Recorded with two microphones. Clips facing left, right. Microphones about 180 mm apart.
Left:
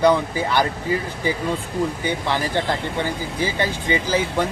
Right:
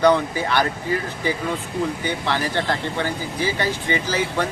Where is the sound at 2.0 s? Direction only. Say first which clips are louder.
Left 1 dB; 15° left (ahead or behind).